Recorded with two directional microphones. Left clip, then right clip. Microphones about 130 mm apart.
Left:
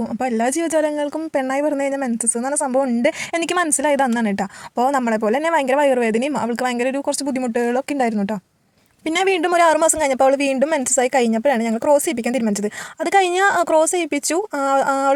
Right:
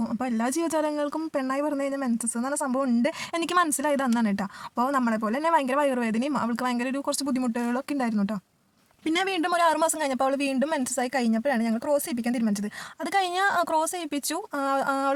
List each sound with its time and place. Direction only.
0.2 s a woman's voice: 20° left (ahead or behind)
2.6 s a woman's voice: 10° left (ahead or behind)
3.0 s a woman's voice: 25° left (ahead or behind)